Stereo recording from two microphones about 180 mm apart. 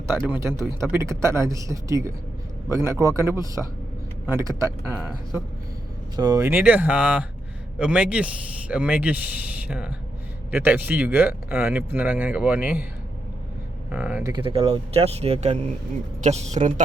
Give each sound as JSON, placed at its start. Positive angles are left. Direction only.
{"t": 0.2, "sound": "speech", "side_deg": -15}
{"t": 6.1, "sound": "speech", "side_deg": -20}
{"t": 13.9, "sound": "speech", "side_deg": -5}
{"t": 14.3, "sound": "speech", "side_deg": -30}